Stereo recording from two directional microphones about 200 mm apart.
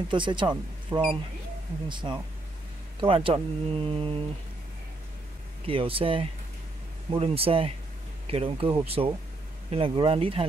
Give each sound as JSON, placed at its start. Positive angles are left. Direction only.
{"t": 0.1, "sound": "speech", "side_deg": -25}
{"t": 5.7, "sound": "speech", "side_deg": -25}